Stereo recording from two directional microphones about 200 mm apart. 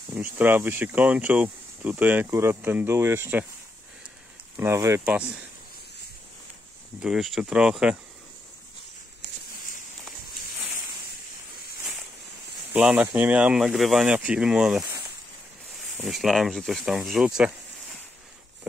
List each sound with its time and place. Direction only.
0.1 s speech: 10° right (ahead or behind)
4.6 s speech: 15° right (ahead or behind)
7.0 s speech: centre (ahead or behind)
10.0 s a sound: centre (ahead or behind)
12.7 s speech: 10° right (ahead or behind)
14.8 s a sound: 15° right (ahead or behind)
15.7 s speech: centre (ahead or behind)